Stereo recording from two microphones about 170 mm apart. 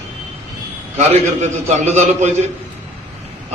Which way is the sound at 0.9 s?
40° right (ahead or behind).